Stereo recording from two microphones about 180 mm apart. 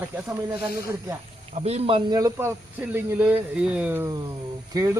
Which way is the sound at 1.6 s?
35° right (ahead or behind).